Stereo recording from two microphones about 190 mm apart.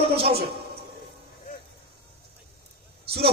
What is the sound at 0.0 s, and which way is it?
Speech, 30° right (ahead or behind).